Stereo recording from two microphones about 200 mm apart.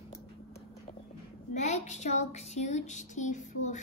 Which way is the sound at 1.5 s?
35° left (ahead or behind).